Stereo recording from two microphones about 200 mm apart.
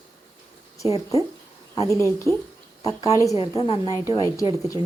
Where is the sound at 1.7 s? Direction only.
15° left (ahead or behind).